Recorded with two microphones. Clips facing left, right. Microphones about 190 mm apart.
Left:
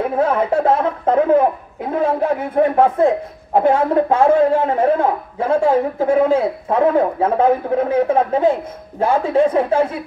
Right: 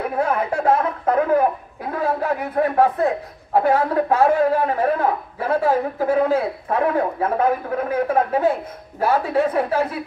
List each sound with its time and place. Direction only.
0.2 s a man's voice: 25° left (ahead or behind)